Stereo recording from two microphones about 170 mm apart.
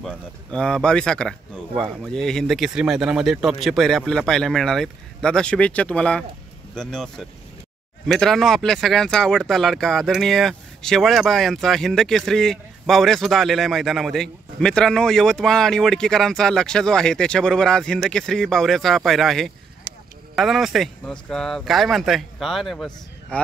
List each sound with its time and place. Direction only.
0.0 s speech: 5° left (ahead or behind)
19.9 s a sound: 55° left (ahead or behind)
20.3 s speech: centre (ahead or behind)